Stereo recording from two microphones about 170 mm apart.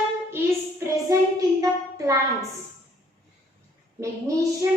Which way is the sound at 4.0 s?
20° right (ahead or behind).